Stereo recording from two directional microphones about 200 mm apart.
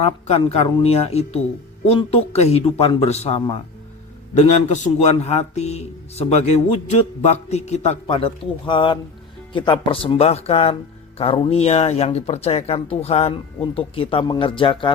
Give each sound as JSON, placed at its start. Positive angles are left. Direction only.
{"t": 0.0, "sound": "a man's voice", "side_deg": 30}